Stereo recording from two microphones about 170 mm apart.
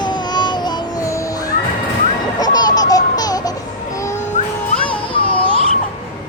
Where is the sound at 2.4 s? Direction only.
20° left (ahead or behind).